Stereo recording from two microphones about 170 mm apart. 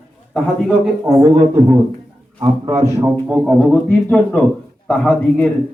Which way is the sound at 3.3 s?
Centre (ahead or behind).